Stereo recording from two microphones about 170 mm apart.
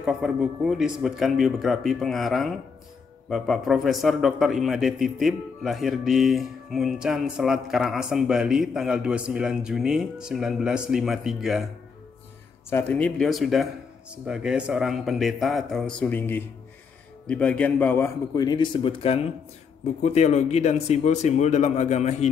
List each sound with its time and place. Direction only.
0.0 s a man's voice: centre (ahead or behind)
12.6 s a man's voice: 10° left (ahead or behind)
18.3 s a man's voice: 25° left (ahead or behind); by 22.3 s 40° left (ahead or behind)